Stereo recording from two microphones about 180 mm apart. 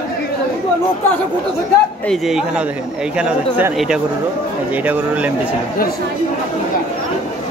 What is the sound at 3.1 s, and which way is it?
Speech, 5° right (ahead or behind).